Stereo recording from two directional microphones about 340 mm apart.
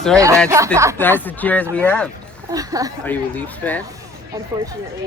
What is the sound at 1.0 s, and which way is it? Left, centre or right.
Speech, centre.